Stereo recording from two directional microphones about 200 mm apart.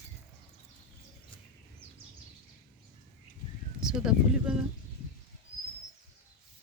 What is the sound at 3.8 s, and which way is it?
Speech, 5° right (ahead or behind).